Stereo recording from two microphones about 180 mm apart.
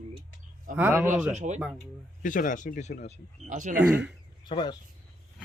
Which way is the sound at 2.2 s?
45° left (ahead or behind).